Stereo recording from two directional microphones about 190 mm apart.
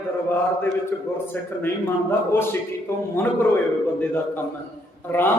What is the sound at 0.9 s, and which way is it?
A man's voice, 15° left (ahead or behind).